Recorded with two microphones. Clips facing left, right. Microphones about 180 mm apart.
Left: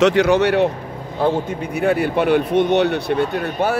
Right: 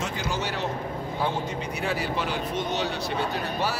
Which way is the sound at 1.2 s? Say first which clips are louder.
Left 11 dB; 55° left (ahead or behind).